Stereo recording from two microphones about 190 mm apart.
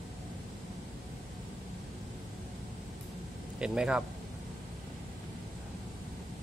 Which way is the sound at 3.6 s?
5° right (ahead or behind).